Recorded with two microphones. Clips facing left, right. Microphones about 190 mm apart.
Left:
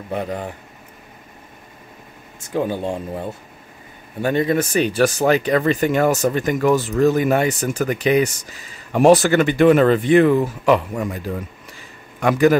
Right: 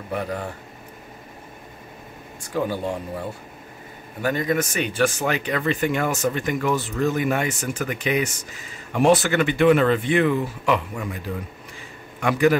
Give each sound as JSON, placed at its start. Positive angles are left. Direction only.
{"t": 0.1, "sound": "speech", "side_deg": 20}
{"t": 2.4, "sound": "speech", "side_deg": 25}